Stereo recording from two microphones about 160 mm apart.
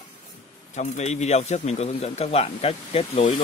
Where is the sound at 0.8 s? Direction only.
45° left (ahead or behind).